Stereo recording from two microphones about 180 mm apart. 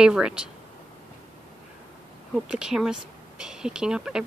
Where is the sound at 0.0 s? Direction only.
5° right (ahead or behind).